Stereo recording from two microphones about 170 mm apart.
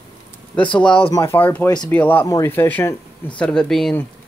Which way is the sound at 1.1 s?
15° left (ahead or behind).